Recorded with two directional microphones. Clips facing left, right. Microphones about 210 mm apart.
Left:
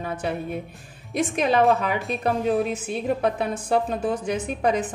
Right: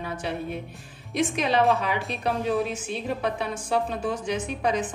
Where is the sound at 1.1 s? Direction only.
50° left (ahead or behind).